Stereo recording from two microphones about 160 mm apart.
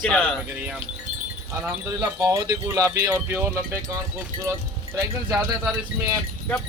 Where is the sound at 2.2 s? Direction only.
20° right (ahead or behind).